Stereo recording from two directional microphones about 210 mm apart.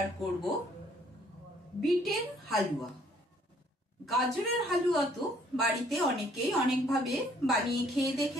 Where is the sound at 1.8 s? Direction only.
Centre (ahead or behind).